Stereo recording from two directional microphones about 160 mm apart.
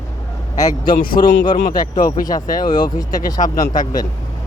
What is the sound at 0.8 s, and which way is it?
Speech, 65° left (ahead or behind).